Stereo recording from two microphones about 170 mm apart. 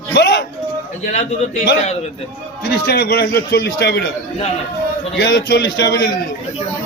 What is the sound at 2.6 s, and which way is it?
A man's voice, 70° left (ahead or behind).